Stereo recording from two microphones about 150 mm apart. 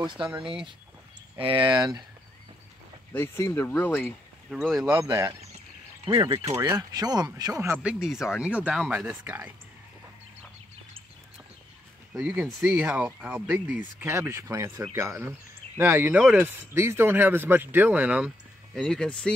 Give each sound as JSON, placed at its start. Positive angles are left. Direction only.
{"t": 0.0, "sound": "speech", "side_deg": -35}
{"t": 1.4, "sound": "speech", "side_deg": -35}
{"t": 3.1, "sound": "speech", "side_deg": 15}
{"t": 4.5, "sound": "speech", "side_deg": 0}
{"t": 5.0, "sound": "speech", "side_deg": -20}
{"t": 7.8, "sound": "speech", "side_deg": -5}
{"t": 12.1, "sound": "speech", "side_deg": -5}
{"t": 18.8, "sound": "speech", "side_deg": 5}